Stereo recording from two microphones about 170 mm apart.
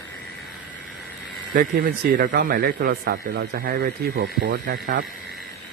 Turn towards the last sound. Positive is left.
turn(degrees=-55)  # may be behind; listen again after turning